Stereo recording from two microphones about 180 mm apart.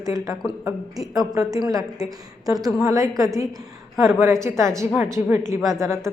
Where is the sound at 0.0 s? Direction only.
20° right (ahead or behind).